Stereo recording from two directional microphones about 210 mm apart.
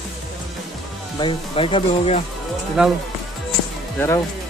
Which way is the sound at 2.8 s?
5° right (ahead or behind).